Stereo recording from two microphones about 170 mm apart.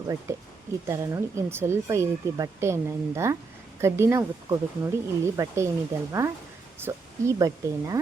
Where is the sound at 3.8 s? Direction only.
15° right (ahead or behind).